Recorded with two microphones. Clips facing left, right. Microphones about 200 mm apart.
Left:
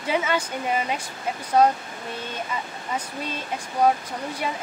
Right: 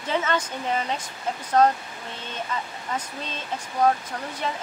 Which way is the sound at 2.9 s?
10° left (ahead or behind).